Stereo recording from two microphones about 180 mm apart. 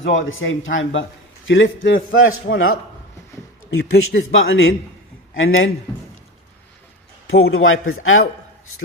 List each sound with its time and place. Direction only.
0.0 s a man's voice: 90° left
3.8 s a man's voice: 90° left
7.3 s a man's voice: 90° left